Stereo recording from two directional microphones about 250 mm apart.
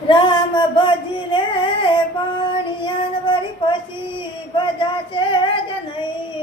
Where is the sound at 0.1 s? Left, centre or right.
Centre.